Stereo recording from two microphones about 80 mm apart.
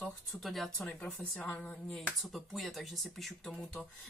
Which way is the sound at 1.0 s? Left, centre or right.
Centre.